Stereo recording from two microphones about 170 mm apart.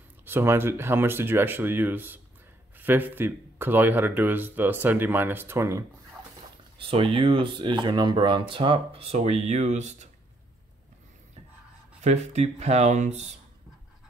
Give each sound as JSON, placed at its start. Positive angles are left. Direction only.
{"t": 0.2, "sound": "speech", "side_deg": -15}
{"t": 6.8, "sound": "speech", "side_deg": -30}
{"t": 12.0, "sound": "speech", "side_deg": -40}